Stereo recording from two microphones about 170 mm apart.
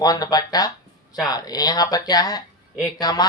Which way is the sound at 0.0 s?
20° left (ahead or behind).